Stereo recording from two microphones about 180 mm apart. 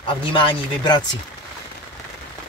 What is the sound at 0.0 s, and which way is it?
Speech, 30° left (ahead or behind).